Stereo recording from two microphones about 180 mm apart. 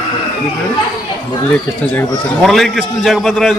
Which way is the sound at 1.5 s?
10° left (ahead or behind).